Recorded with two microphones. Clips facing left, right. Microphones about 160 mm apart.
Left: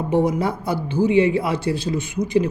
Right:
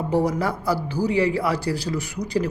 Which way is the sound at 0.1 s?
25° left (ahead or behind).